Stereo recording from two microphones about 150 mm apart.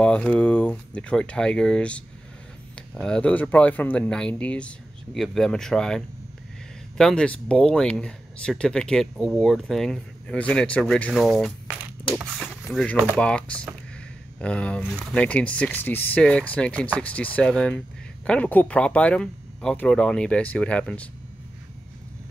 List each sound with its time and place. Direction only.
0.0 s speech: 10° left (ahead or behind)
13.2 s speech: 5° left (ahead or behind)